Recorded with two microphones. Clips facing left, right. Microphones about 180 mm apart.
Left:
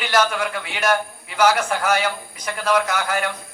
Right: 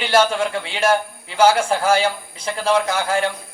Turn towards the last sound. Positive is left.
turn(degrees=-25)  # may be behind; listen again after turning